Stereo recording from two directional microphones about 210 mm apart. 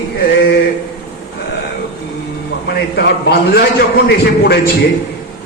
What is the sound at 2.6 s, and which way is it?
A man's voice, 50° left (ahead or behind).